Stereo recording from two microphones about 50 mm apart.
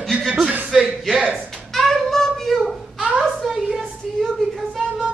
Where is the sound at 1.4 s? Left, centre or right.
Centre.